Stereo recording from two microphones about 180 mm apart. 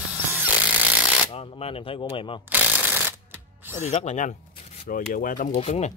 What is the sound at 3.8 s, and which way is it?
Speech, 40° left (ahead or behind).